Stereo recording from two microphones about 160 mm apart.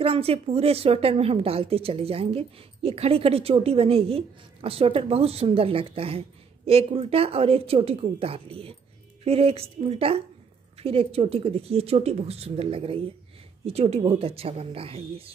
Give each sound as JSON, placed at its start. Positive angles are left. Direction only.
{"t": 0.0, "sound": "a woman's voice", "side_deg": -35}